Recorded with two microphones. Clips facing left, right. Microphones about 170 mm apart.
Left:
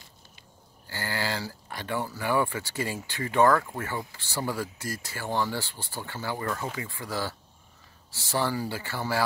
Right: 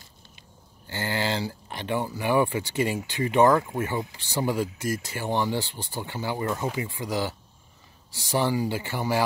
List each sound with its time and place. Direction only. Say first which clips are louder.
0.4 s speech: right 1 dB; 20° right (ahead or behind)